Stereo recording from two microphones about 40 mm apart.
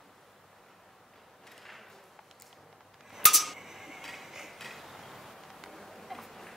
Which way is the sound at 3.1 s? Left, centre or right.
Centre.